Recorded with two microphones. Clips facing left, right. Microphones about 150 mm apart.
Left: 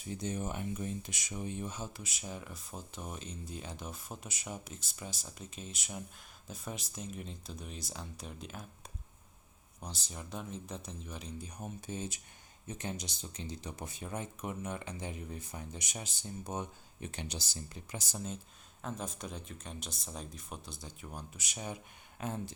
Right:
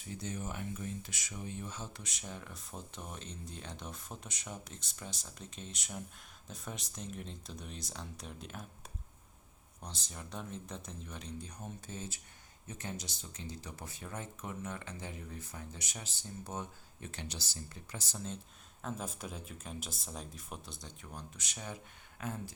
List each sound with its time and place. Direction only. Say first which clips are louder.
0.2 s speech: left 3 dB; 20° left (ahead or behind); by 8.6 s centre (ahead or behind)
9.8 s speech: left 2 dB; 5° left (ahead or behind); by 22.5 s 25° left (ahead or behind)